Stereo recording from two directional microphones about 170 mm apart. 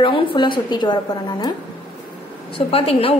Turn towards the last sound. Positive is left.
turn(degrees=35)  # may be behind; listen again after turning